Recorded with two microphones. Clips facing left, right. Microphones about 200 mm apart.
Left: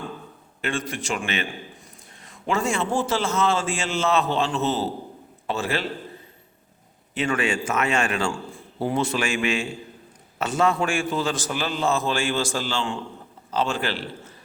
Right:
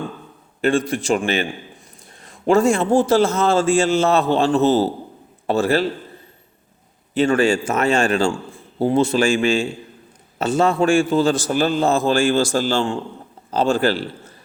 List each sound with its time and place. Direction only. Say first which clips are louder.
0.6 s a man's voice: right 10 dB; 35° right (ahead or behind)
7.1 s a man's voice: right 8 dB; 30° right (ahead or behind)
11.5 s a man's voice: right 5 dB; 45° right (ahead or behind)